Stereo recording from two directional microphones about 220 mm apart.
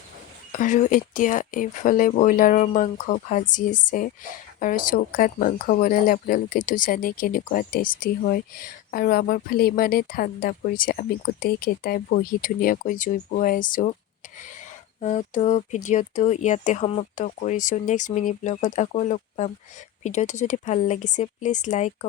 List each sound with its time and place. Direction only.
0.5 s speech: 35° left (ahead or behind)
15.0 s speech: 35° left (ahead or behind)